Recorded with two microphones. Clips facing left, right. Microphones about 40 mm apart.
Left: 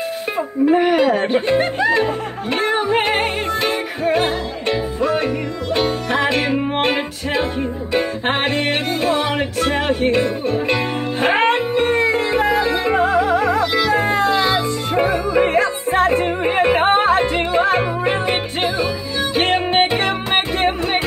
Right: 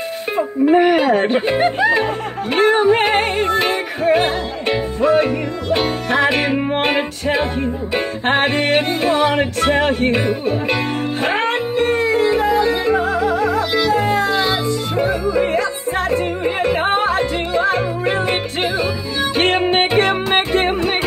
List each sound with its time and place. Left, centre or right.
0.4 s music: centre
0.9 s music: centre
8.7 s music: centre
11.3 s music: centre
12.9 s music: left
13.6 s music: centre
13.9 s music: left
14.3 s music: centre
15.3 s yodeling: left
18.0 s music: centre
19.4 s music: centre